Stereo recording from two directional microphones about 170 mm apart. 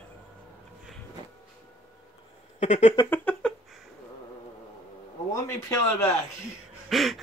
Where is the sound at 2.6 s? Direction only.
45° left (ahead or behind).